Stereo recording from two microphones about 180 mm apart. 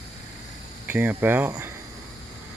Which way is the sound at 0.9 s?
10° right (ahead or behind).